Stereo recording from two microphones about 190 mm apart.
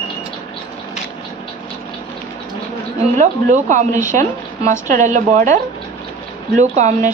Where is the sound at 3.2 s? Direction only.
40° right (ahead or behind).